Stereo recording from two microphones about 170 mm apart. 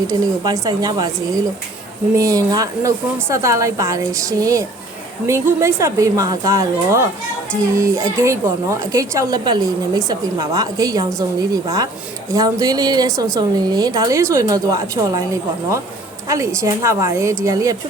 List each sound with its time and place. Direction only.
0.1 s a woman's voice: 20° right (ahead or behind)
15.0 s a woman's voice: 30° right (ahead or behind)
16.3 s a woman's voice: 15° right (ahead or behind)